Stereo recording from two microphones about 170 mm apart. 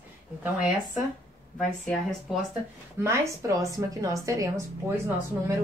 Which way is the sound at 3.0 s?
15° right (ahead or behind).